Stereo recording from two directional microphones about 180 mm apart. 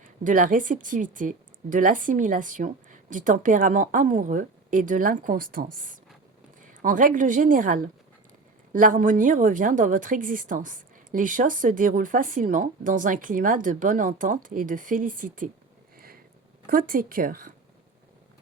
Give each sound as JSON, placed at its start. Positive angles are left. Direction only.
{"t": 0.0, "sound": "a woman's voice", "side_deg": -50}
{"t": 16.6, "sound": "a woman's voice", "side_deg": -50}